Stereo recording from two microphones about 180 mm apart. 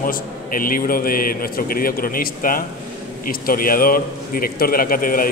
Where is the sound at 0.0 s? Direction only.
50° left (ahead or behind).